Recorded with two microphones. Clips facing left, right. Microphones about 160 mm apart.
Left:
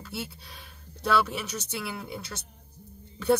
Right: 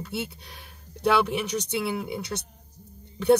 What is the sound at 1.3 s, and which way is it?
Speech, 15° right (ahead or behind).